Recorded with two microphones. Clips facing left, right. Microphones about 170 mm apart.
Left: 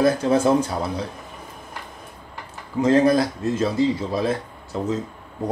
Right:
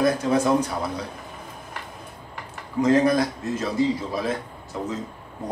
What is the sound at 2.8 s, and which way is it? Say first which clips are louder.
Speech: left 2 dB; 30° left (ahead or behind).